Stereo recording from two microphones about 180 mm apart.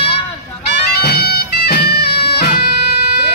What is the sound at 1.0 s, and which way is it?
Bagpipes, 60° left (ahead or behind).